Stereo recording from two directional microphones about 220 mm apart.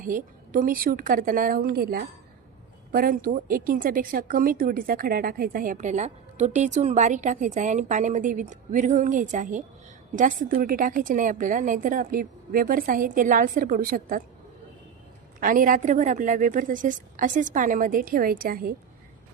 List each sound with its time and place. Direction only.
0.0 s a woman's voice: 40° right (ahead or behind)
15.4 s a woman's voice: 40° right (ahead or behind)